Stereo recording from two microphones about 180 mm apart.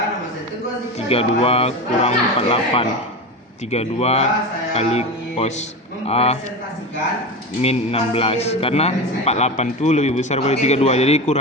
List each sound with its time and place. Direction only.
0.9 s a man's voice: 35° left (ahead or behind)
4.7 s music: 35° left (ahead or behind)
6.1 s a man's voice: 35° left (ahead or behind)
7.6 s a man's voice: 35° left (ahead or behind)